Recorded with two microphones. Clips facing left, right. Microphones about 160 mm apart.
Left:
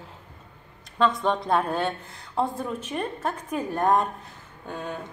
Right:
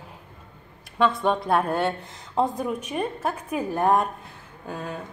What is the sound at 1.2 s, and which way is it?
A woman's voice, 5° right (ahead or behind).